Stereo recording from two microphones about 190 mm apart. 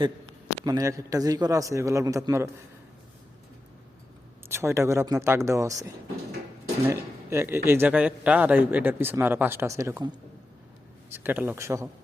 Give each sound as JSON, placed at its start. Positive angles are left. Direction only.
{"t": 0.6, "sound": "a man's voice", "side_deg": -20}
{"t": 4.4, "sound": "a man's voice", "side_deg": -15}
{"t": 6.8, "sound": "a man's voice", "side_deg": -15}
{"t": 11.1, "sound": "a man's voice", "side_deg": -10}